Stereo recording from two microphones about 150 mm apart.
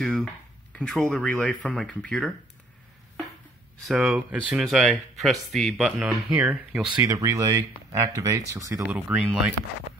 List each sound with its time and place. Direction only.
0.0 s dishes: 5° left (ahead or behind)
0.7 s speech: 5° left (ahead or behind)
3.8 s speech: centre (ahead or behind); by 8.8 s 20° right (ahead or behind)
8.8 s speech: 5° right (ahead or behind)